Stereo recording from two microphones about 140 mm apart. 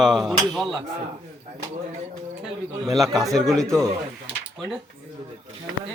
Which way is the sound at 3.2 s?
Centre (ahead or behind).